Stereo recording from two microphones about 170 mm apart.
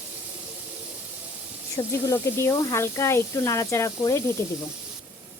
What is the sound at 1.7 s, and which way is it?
Speech, 20° left (ahead or behind).